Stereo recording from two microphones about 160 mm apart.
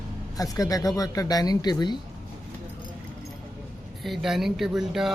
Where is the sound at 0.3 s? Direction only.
20° left (ahead or behind).